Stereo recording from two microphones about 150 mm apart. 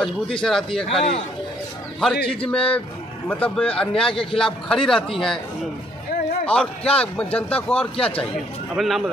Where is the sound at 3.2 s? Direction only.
10° left (ahead or behind).